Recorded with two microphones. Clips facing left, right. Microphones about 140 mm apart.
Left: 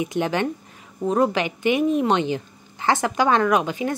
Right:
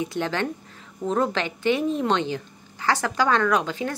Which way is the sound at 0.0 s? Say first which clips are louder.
Left 3 dB; 15° left (ahead or behind).